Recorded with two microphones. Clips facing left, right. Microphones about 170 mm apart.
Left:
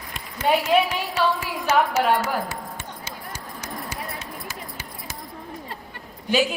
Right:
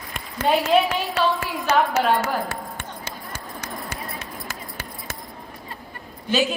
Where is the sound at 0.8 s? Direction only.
55° right (ahead or behind).